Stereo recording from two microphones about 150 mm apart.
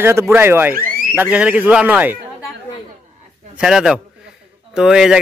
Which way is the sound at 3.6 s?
5° right (ahead or behind).